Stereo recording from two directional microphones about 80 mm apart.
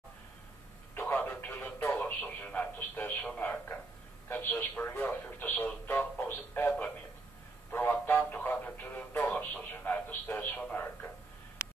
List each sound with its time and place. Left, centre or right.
0.9 s radio: left
2.0 s radio: centre